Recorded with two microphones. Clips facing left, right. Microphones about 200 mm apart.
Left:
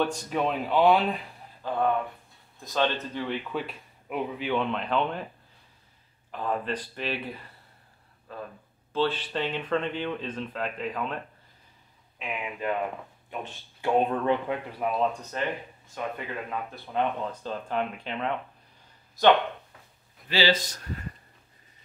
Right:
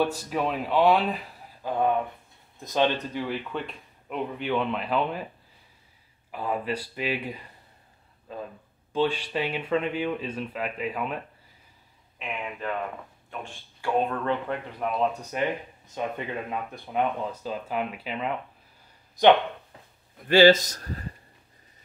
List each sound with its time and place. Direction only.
0.0 s speech: 5° right (ahead or behind)
1.6 s a sound: 15° right (ahead or behind)
2.7 s speech: 10° right (ahead or behind)
3.5 s speech: 5° left (ahead or behind)
6.3 s speech: 10° right (ahead or behind)
8.3 s a sound: 20° right (ahead or behind)
8.9 s speech: 15° right (ahead or behind)
12.2 s speech: 5° left (ahead or behind)
13.3 s speech: 20° left (ahead or behind); by 15.0 s 5° left (ahead or behind)
15.3 s speech: 15° right (ahead or behind)
19.2 s speech: 15° right (ahead or behind)
20.2 s a man's voice: 50° right (ahead or behind)